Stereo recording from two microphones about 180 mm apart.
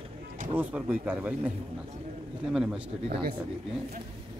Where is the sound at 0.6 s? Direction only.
10° right (ahead or behind).